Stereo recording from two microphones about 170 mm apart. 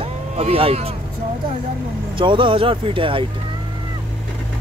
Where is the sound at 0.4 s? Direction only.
35° right (ahead or behind).